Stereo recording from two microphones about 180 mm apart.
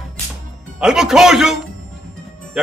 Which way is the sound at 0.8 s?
5° right (ahead or behind).